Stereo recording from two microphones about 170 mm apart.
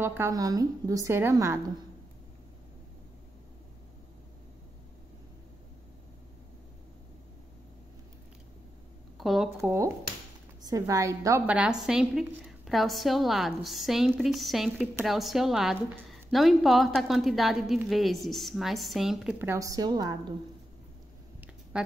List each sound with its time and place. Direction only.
0.0 s a woman's voice: 15° right (ahead or behind)
9.2 s speech: centre (ahead or behind)
9.6 s a woman's voice: 15° right (ahead or behind)
21.7 s speech: 5° right (ahead or behind)